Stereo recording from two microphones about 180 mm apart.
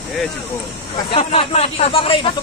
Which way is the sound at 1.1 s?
35° left (ahead or behind).